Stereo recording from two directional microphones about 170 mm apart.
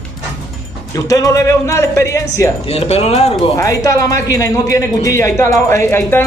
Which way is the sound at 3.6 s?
20° left (ahead or behind).